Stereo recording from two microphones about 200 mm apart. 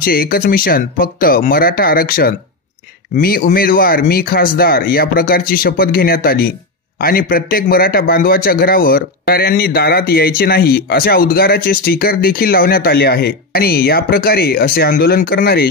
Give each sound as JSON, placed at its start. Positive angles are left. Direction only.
{"t": 0.0, "sound": "a man's voice", "side_deg": 45}